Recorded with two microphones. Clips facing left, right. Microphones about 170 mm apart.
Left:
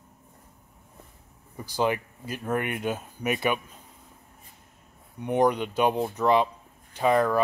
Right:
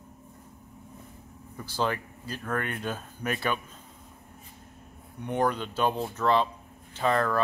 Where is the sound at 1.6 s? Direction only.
15° left (ahead or behind).